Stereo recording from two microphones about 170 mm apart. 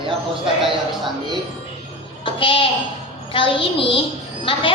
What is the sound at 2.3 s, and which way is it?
A woman's voice, 30° left (ahead or behind).